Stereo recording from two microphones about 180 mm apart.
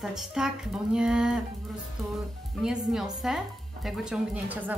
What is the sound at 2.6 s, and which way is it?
Speech, 5° right (ahead or behind).